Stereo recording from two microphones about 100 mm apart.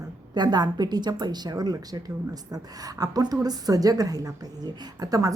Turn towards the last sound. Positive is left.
turn(degrees=-35)  # may be behind; listen again after turning